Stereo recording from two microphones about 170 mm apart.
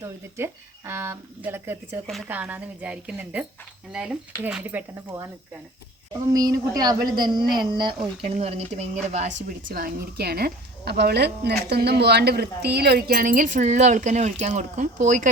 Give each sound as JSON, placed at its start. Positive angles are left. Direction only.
{"t": 0.0, "sound": "speech", "side_deg": -15}
{"t": 6.3, "sound": "a woman's voice", "side_deg": -20}
{"t": 8.2, "sound": "speech", "side_deg": -35}